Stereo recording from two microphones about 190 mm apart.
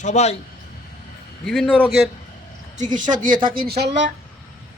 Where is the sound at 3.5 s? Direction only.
55° right (ahead or behind).